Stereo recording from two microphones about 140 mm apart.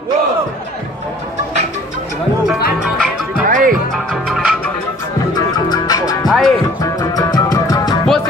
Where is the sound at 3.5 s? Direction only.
75° right (ahead or behind).